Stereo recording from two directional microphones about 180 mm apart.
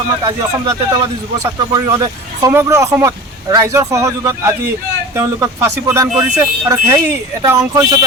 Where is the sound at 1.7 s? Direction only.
20° right (ahead or behind).